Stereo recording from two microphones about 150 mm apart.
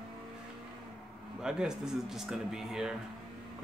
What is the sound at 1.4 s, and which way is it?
Speech, 5° right (ahead or behind).